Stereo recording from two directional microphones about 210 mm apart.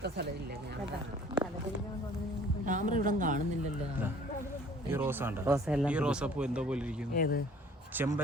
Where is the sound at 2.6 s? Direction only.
40° right (ahead or behind).